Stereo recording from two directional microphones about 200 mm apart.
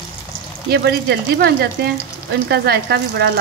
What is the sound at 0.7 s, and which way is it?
Speech, 55° right (ahead or behind).